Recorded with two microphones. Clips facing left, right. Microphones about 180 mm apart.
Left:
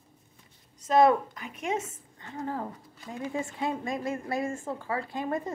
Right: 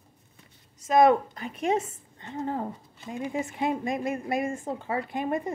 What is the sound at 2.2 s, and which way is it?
A woman's voice, 20° right (ahead or behind).